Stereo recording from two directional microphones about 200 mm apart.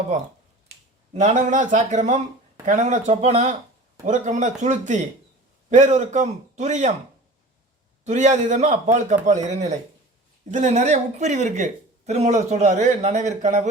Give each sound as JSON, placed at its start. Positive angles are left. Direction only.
{"t": 0.7, "sound": "speech", "side_deg": -35}
{"t": 8.0, "sound": "speech", "side_deg": -35}